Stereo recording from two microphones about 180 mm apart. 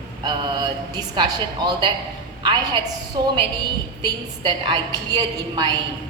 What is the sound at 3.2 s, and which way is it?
A woman's voice, 20° right (ahead or behind).